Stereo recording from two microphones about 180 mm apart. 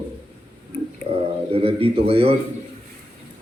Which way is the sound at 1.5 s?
30° right (ahead or behind).